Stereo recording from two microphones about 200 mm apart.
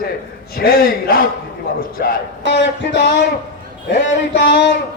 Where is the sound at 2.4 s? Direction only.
60° left (ahead or behind).